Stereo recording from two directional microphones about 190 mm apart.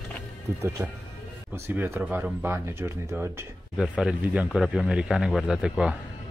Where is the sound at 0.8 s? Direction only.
15° right (ahead or behind).